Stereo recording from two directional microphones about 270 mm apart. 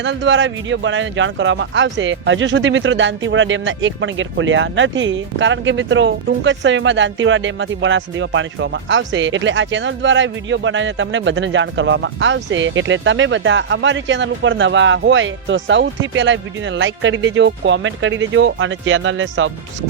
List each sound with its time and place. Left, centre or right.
0.0 s speech: right